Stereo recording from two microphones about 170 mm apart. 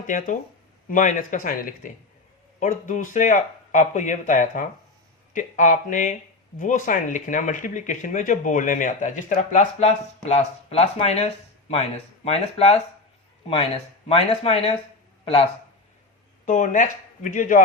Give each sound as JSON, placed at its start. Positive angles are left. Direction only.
{"t": 0.1, "sound": "speech", "side_deg": 50}
{"t": 14.1, "sound": "speech", "side_deg": 35}
{"t": 16.5, "sound": "speech", "side_deg": 45}